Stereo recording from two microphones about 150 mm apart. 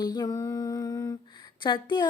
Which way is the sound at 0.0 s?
25° left (ahead or behind).